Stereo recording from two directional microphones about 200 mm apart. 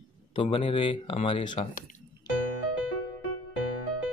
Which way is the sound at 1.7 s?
45° left (ahead or behind).